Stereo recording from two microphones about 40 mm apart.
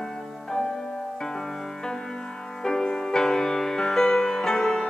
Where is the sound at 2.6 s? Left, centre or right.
Centre.